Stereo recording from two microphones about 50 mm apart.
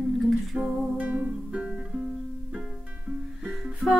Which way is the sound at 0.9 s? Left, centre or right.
Right.